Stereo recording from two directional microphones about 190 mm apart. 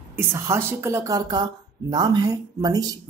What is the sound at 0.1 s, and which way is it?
Speech, 10° right (ahead or behind).